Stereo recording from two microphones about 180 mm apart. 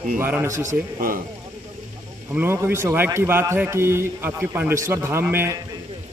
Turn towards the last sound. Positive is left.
turn(degrees=-15)  # may be behind; listen again after turning